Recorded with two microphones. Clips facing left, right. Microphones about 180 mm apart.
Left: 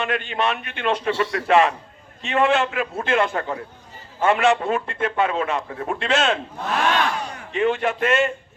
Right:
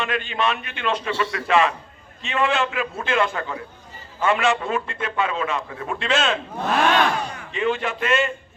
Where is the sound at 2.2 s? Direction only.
50° left (ahead or behind).